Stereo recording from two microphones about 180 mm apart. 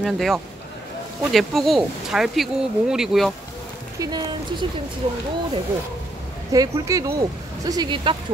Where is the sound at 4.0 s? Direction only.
25° right (ahead or behind).